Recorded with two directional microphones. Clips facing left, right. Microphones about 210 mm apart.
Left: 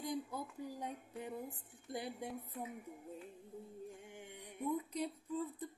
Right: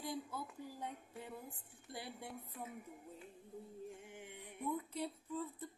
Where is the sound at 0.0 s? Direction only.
20° left (ahead or behind).